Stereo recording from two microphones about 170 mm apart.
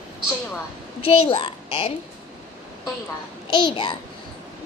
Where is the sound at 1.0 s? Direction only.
35° left (ahead or behind).